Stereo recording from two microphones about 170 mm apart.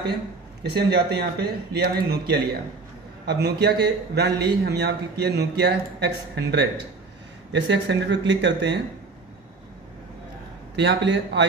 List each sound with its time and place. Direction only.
0.7 s a man's voice: 70° right (ahead or behind); by 8.7 s 90° right
10.8 s speech: 90° right